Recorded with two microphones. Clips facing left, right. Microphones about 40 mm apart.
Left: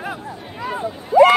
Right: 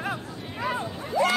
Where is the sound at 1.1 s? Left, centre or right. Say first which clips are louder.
Left 13 dB; centre.